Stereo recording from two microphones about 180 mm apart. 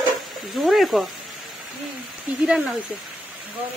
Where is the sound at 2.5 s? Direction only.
5° right (ahead or behind).